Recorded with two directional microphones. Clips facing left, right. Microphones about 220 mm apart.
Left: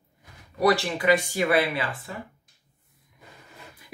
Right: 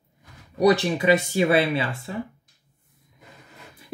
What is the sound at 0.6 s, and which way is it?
Speech, 20° right (ahead or behind).